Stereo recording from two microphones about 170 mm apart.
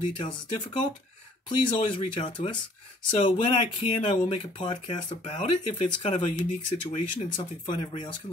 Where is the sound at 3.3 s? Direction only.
40° left (ahead or behind).